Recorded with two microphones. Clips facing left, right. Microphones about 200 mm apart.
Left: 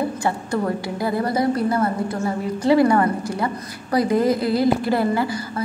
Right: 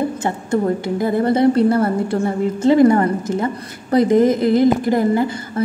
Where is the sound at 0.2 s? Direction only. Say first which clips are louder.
Right 3 dB; 25° right (ahead or behind).